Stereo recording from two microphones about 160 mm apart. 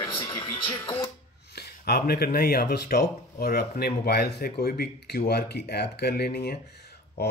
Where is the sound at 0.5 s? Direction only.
30° left (ahead or behind).